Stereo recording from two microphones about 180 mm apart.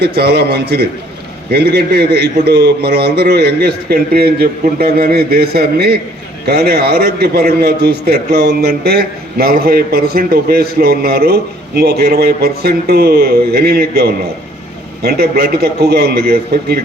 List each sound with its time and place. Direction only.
0.0 s a man's voice: 60° right (ahead or behind)